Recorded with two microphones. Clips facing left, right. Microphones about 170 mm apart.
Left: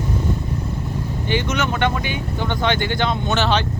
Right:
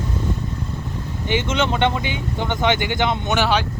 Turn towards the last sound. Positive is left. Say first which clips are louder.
# even
turn(degrees=-10)  # may be behind; listen again after turning